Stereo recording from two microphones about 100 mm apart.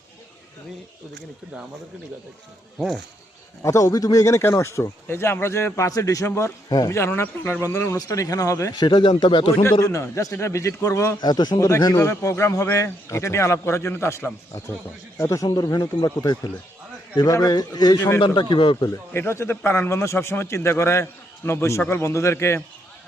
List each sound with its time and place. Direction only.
2.7 s speech: centre (ahead or behind)
3.6 s speech: 30° left (ahead or behind)
6.7 s speech: 40° left (ahead or behind)
6.9 s a man's voice: 25° left (ahead or behind)
8.8 s a man's voice: 50° left (ahead or behind)
9.8 s speech: 30° left (ahead or behind)
11.2 s a man's voice: 45° left (ahead or behind)
18.2 s speech: 55° left (ahead or behind)
18.9 s a man's voice: 25° left (ahead or behind)